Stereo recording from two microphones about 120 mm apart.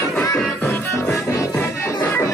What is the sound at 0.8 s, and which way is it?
Music, 20° left (ahead or behind).